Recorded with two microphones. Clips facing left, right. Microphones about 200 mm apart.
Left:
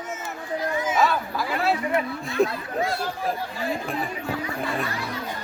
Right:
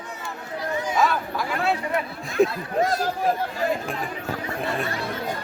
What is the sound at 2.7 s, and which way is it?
Speech, 40° right (ahead or behind).